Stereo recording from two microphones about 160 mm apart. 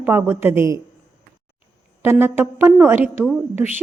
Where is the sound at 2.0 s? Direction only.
15° right (ahead or behind).